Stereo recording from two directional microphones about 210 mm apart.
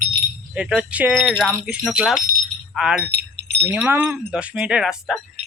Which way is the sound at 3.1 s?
55° right (ahead or behind).